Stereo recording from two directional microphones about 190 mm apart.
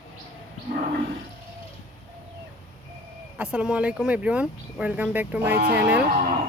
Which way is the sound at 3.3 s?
5° right (ahead or behind).